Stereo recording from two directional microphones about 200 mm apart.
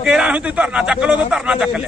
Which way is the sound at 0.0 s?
5° right (ahead or behind).